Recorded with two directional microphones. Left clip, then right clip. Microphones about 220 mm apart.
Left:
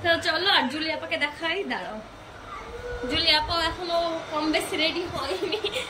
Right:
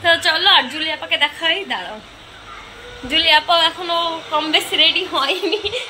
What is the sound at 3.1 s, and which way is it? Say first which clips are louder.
Speech: right 9 dB; 5° left (ahead or behind).